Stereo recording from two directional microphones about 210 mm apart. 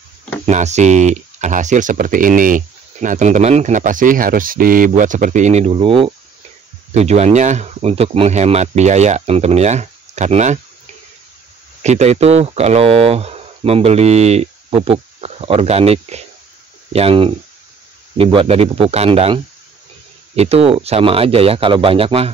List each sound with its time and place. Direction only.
0.5 s speech: 35° right (ahead or behind)
11.8 s speech: 30° right (ahead or behind)